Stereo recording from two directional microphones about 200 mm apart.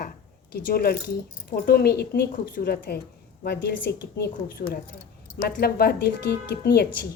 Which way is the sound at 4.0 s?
50° left (ahead or behind).